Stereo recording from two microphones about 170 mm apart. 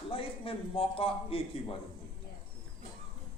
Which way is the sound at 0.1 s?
30° left (ahead or behind).